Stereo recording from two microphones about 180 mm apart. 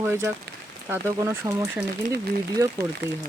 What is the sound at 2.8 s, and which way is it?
Speech, 65° right (ahead or behind).